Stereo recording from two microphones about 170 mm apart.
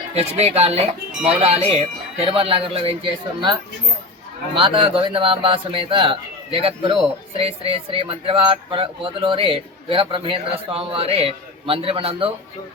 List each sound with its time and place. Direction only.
0.1 s speech: 40° right (ahead or behind)